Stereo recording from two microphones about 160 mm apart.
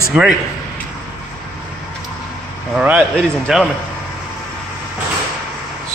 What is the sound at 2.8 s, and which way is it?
Speech, 5° right (ahead or behind).